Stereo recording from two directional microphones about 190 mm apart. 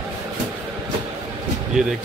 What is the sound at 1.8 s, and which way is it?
Speech, centre (ahead or behind).